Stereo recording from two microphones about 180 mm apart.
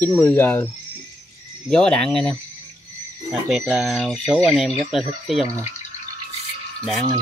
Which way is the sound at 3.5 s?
5° right (ahead or behind).